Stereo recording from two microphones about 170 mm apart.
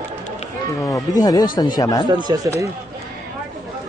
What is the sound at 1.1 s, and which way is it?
Speech, 20° left (ahead or behind).